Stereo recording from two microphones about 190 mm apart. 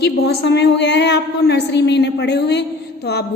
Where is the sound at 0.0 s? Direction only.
60° left (ahead or behind).